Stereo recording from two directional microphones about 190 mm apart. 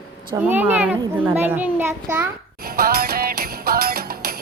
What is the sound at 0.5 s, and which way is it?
A child's voice, 10° right (ahead or behind).